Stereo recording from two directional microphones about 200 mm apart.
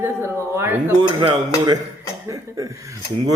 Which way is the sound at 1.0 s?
20° right (ahead or behind).